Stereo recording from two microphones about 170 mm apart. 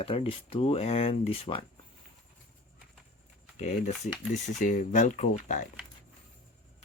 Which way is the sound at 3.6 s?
40° left (ahead or behind).